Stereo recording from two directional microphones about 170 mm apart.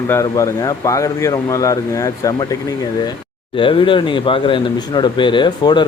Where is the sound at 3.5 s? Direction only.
30° left (ahead or behind).